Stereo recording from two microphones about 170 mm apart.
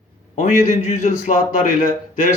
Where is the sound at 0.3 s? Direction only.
45° left (ahead or behind).